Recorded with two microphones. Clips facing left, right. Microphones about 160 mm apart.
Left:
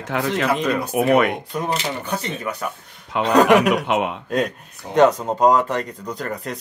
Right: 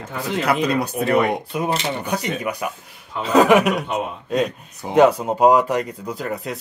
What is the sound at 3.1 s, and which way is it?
Speech, 90° left.